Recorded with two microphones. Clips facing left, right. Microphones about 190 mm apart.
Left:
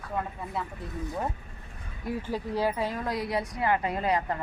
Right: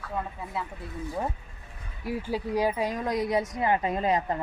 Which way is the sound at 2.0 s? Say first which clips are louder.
Right 1 dB; 10° right (ahead or behind).